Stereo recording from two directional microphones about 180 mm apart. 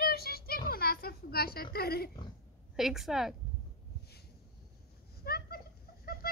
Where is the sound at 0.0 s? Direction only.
60° left (ahead or behind).